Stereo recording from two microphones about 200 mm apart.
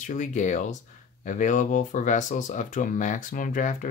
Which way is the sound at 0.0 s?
40° left (ahead or behind).